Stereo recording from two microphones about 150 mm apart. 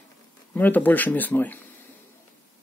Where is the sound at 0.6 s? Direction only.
10° left (ahead or behind).